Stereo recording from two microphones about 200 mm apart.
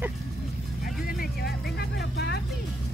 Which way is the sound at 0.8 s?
45° left (ahead or behind).